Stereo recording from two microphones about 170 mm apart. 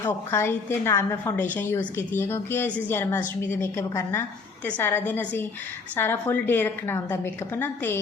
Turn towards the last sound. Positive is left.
turn(degrees=15)  # may be behind; listen again after turning